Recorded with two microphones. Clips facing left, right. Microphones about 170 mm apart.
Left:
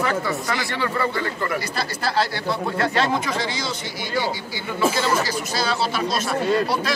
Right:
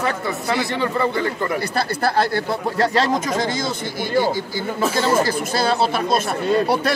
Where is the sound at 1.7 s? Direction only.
55° right (ahead or behind).